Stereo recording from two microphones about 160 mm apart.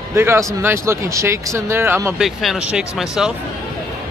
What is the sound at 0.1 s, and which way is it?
Speech, 15° right (ahead or behind).